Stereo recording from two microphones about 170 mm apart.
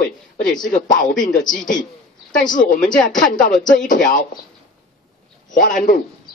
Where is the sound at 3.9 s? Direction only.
50° left (ahead or behind).